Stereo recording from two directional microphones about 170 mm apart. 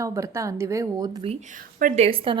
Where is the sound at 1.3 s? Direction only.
45° right (ahead or behind).